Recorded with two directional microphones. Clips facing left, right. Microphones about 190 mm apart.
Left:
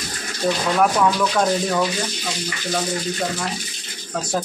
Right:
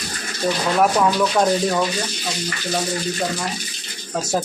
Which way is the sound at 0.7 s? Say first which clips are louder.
Right 1 dB; 15° right (ahead or behind).